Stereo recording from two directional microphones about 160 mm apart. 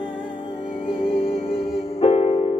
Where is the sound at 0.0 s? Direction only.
30° left (ahead or behind).